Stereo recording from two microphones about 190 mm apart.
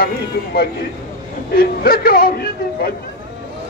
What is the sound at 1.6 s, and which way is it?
A man's voice, 50° left (ahead or behind).